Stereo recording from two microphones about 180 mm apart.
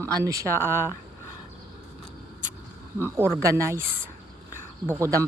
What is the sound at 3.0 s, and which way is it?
Speech, 15° right (ahead or behind).